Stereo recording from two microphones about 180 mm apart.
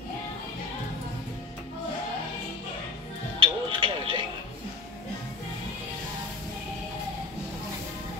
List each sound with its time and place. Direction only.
3.3 s music: 30° right (ahead or behind)